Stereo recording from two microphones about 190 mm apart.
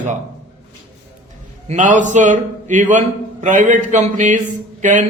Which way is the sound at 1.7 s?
40° right (ahead or behind).